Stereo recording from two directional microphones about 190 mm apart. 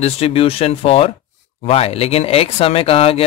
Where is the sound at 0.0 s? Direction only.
30° left (ahead or behind).